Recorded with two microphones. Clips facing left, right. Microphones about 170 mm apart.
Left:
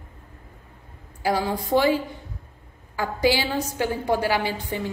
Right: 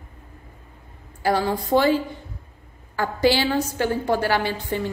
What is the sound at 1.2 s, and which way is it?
A woman's voice, 15° left (ahead or behind).